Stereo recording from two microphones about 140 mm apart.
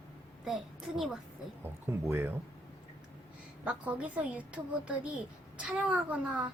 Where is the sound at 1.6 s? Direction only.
15° right (ahead or behind).